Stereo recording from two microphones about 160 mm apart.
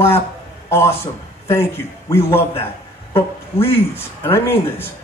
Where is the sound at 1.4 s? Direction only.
15° left (ahead or behind).